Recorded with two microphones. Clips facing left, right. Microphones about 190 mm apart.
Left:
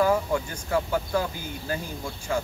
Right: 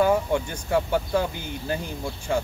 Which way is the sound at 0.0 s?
25° right (ahead or behind).